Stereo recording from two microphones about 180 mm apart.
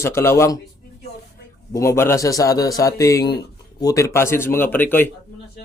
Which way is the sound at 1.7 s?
15° left (ahead or behind).